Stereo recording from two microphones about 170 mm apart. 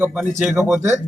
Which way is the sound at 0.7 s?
15° right (ahead or behind).